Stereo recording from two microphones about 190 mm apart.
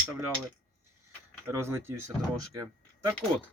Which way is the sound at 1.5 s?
15° right (ahead or behind).